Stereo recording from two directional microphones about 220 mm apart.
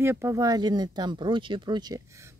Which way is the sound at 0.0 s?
10° right (ahead or behind).